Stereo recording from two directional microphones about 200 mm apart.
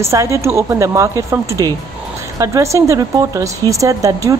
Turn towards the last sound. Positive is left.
turn(degrees=-15)  # may be behind; listen again after turning